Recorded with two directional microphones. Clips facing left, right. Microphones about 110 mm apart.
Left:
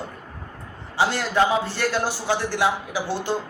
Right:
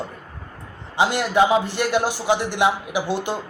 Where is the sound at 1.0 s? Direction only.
15° right (ahead or behind).